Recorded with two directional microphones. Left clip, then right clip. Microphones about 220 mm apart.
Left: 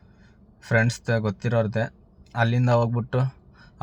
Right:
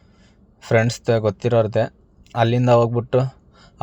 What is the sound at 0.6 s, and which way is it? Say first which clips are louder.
Speech: right 5 dB; 20° right (ahead or behind).